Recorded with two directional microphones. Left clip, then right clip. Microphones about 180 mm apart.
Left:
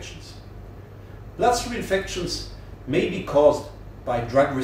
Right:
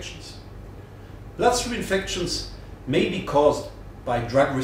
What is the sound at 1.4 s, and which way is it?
A man's voice, 20° right (ahead or behind).